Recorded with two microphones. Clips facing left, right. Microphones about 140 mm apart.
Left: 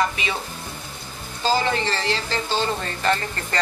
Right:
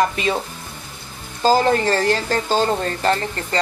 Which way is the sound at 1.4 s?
40° right (ahead or behind).